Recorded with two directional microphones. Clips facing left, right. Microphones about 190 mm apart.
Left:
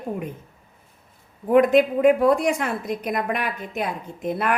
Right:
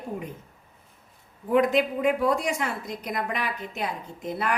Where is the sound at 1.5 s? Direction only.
55° left (ahead or behind).